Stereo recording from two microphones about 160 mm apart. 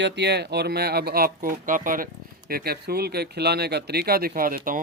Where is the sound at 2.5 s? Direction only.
80° right.